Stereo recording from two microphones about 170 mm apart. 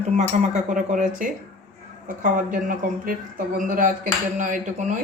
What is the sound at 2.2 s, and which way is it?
Speech, 50° right (ahead or behind).